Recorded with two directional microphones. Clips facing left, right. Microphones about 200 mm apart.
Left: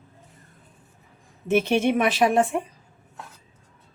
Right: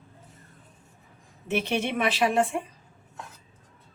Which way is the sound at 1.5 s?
45° left (ahead or behind).